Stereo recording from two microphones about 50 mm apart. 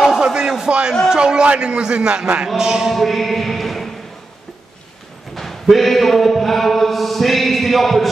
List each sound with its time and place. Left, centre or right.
0.2 s a sound: centre
1.1 s a man's voice: centre
2.5 s chant: centre
2.9 s chant: centre
5.3 s chant: centre